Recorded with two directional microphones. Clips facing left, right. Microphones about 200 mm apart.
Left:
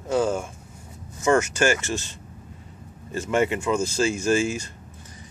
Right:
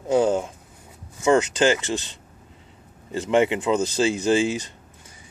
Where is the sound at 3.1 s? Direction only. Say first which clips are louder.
Right 3 dB; 15° right (ahead or behind).